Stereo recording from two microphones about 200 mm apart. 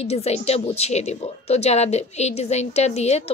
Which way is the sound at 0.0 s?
30° left (ahead or behind).